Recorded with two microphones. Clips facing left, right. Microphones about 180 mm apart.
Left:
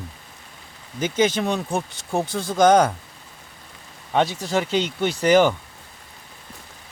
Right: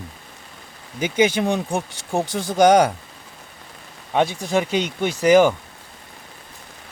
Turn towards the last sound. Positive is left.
turn(degrees=-10)  # may be behind; listen again after turning